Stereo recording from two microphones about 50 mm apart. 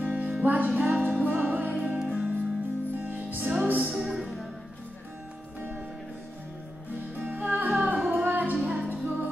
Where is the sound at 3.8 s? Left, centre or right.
Centre.